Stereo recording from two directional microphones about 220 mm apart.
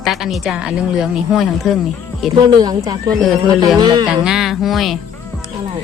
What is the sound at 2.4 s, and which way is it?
Speech, 20° right (ahead or behind).